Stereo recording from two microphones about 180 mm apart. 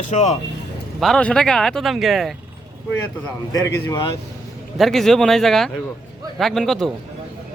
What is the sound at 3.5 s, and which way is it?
Speech, 20° left (ahead or behind).